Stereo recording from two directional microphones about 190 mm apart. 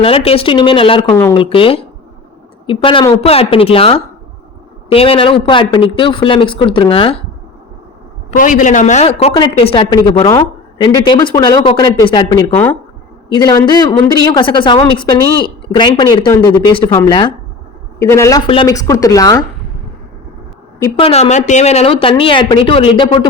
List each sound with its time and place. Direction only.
0.0 s speech: 30° left (ahead or behind)
1.1 s a woman's voice: 15° left (ahead or behind)
1.4 s speech: 30° left (ahead or behind)
8.4 s a woman's voice: 45° left (ahead or behind); by 19.5 s 20° left (ahead or behind)
21.0 s speech: 35° left (ahead or behind)